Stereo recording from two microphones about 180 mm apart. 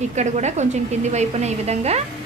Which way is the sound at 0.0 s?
40° right (ahead or behind).